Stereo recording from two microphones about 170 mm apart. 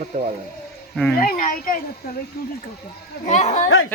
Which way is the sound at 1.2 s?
55° left (ahead or behind).